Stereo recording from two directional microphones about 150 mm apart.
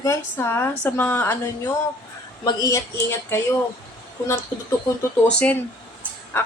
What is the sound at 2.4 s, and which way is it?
Speech, 25° left (ahead or behind).